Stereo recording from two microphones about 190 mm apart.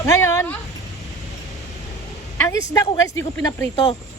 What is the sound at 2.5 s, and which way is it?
Speech, 15° left (ahead or behind).